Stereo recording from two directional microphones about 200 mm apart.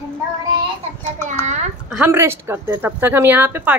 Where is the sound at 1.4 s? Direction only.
35° right (ahead or behind).